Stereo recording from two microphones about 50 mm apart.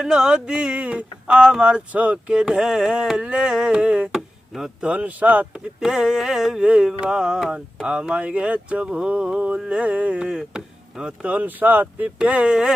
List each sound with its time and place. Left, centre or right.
0.0 s a sound: centre
1.4 s speech: centre
2.3 s a sound: centre
4.1 s tick-tock: centre
4.8 s speech: right
5.5 s a sound: centre
8.2 s speech: right
10.2 s speech: centre
11.3 s speech: right
12.2 s speech: right